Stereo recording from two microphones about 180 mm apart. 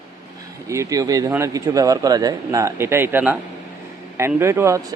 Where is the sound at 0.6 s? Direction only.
15° right (ahead or behind).